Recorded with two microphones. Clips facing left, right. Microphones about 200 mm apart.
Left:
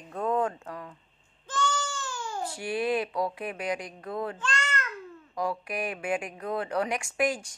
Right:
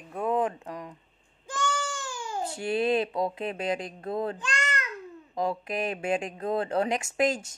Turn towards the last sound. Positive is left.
turn(degrees=-25)  # may be behind; listen again after turning